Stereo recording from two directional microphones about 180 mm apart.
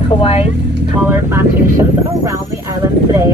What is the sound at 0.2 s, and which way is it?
Speech, 35° left (ahead or behind).